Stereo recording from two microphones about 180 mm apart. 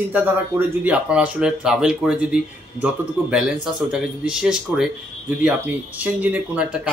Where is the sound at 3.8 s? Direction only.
5° right (ahead or behind).